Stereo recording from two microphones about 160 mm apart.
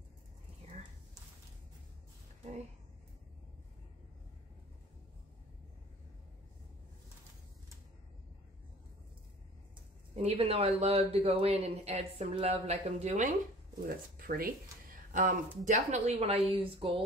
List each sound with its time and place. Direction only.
10.1 s speech: 40° right (ahead or behind)
13.8 s speech: 65° right (ahead or behind); by 17.0 s 35° right (ahead or behind)